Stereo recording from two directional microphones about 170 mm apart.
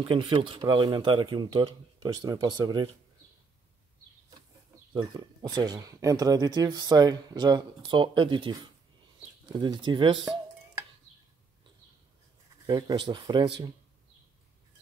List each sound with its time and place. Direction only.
0.0 s speech: 30° right (ahead or behind)
4.9 s speech: 25° right (ahead or behind)
12.6 s speech: 25° right (ahead or behind)